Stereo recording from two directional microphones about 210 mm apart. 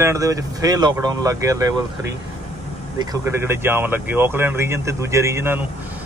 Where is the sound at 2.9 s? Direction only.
15° right (ahead or behind).